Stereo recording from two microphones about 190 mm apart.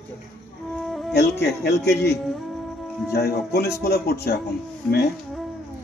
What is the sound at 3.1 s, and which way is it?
Speech, 55° left (ahead or behind).